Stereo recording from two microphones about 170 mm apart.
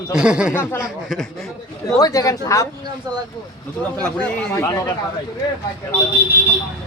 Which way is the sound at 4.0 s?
5° left (ahead or behind).